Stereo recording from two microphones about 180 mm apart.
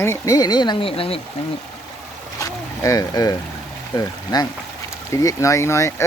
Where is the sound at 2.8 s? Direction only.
20° left (ahead or behind).